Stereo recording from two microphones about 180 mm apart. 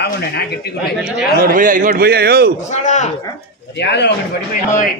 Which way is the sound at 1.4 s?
50° right (ahead or behind).